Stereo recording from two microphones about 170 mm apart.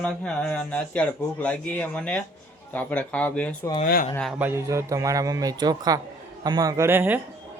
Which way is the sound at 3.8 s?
55° left (ahead or behind).